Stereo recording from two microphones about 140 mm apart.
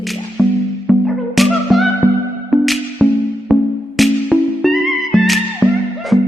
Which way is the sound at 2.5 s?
Centre (ahead or behind).